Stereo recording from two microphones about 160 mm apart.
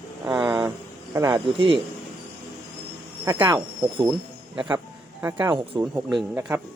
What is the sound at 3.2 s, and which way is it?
Speech, 15° right (ahead or behind).